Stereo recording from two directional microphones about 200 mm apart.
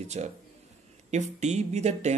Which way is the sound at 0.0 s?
35° right (ahead or behind).